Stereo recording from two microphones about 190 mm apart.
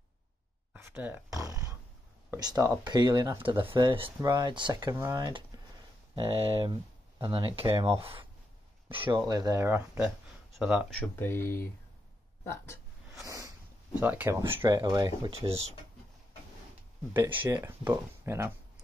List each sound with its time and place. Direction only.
0.7 s a sound: 10° right (ahead or behind)
2.3 s speech: 15° right (ahead or behind)
6.1 s speech: 30° right (ahead or behind); by 11.0 s 5° right (ahead or behind)
11.0 s speech: 10° left (ahead or behind)
13.1 s a sound: 15° right (ahead or behind)
13.9 s speech: 10° right (ahead or behind)
15.3 s speech: 30° right (ahead or behind)
17.4 s speech: 10° right (ahead or behind)